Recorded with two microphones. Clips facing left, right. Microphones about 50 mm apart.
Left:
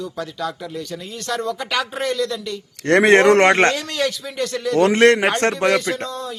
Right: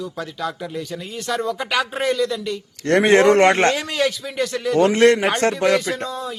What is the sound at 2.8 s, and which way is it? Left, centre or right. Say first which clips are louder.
Speech: left 2 dB; left.